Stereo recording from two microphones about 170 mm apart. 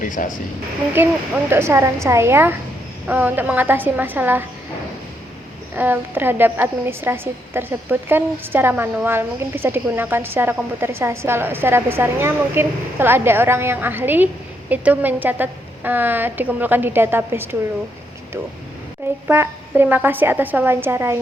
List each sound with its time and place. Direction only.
0.0 s a woman's voice: 50° left (ahead or behind)
1.5 s a woman's voice: 15° right (ahead or behind)
5.7 s a woman's voice: 10° right (ahead or behind)
19.3 s a woman's voice: 10° right (ahead or behind)